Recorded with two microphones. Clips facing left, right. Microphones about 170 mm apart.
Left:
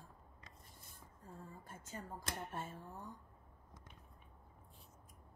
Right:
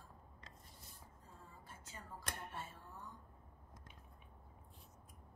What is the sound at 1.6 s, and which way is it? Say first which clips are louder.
A woman's voice: left 5 dB; 50° left (ahead or behind).